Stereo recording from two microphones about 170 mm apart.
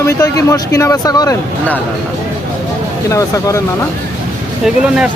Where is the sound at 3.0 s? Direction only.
20° left (ahead or behind).